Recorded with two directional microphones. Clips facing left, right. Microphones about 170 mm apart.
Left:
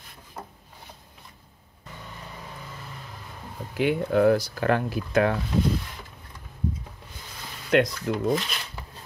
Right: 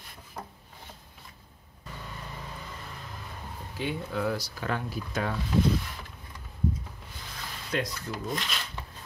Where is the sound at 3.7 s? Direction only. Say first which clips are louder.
Left 10 dB; 65° left (ahead or behind).